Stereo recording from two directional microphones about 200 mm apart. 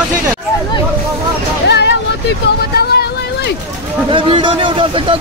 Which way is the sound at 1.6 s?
55° left (ahead or behind).